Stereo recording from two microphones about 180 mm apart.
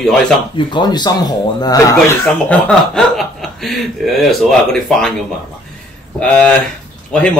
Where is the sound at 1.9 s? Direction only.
5° left (ahead or behind).